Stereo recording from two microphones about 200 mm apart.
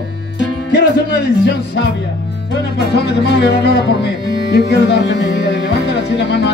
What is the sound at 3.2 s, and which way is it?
Speech, 55° left (ahead or behind).